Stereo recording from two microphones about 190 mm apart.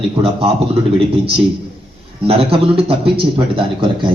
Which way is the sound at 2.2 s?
30° right (ahead or behind).